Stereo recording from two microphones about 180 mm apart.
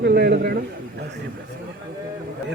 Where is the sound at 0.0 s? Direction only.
65° right (ahead or behind).